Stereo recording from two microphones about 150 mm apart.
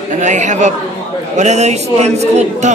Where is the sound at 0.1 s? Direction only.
55° right (ahead or behind).